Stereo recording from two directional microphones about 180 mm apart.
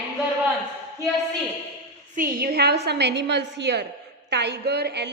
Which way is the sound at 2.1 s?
55° right (ahead or behind).